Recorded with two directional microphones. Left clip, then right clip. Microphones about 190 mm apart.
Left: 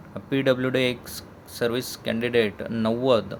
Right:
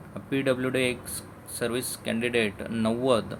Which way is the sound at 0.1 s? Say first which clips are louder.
Left 4 dB; 20° left (ahead or behind).